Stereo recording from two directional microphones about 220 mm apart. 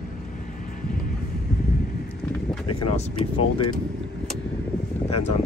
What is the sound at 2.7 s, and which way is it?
Speech, 25° left (ahead or behind).